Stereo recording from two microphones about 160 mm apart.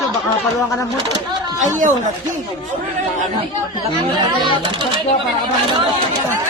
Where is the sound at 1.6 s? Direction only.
50° right (ahead or behind).